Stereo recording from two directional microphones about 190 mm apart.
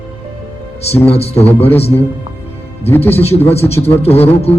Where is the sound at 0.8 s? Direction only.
35° left (ahead or behind).